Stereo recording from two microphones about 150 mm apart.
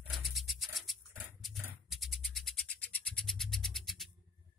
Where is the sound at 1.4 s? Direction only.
Centre (ahead or behind).